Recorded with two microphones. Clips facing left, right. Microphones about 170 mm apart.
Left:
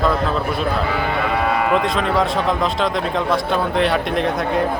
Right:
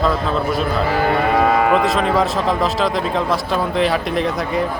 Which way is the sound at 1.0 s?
55° right (ahead or behind).